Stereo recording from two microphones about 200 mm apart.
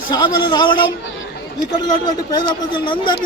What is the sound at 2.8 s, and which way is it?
Speech, 25° left (ahead or behind).